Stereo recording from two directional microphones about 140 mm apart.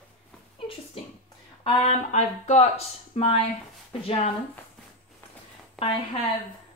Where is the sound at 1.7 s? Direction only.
45° left (ahead or behind).